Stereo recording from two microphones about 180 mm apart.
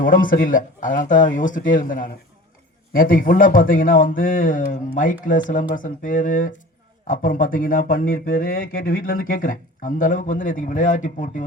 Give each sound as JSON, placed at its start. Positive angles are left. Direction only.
{"t": 0.0, "sound": "speech", "side_deg": 50}